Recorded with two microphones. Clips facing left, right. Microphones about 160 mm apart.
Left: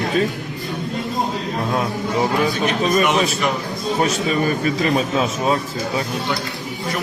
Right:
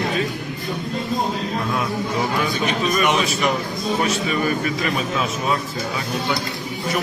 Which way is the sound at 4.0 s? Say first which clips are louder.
Left 4 dB; 35° left (ahead or behind).